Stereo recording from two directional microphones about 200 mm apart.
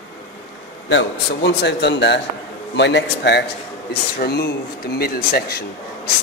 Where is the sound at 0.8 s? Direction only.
60° left (ahead or behind).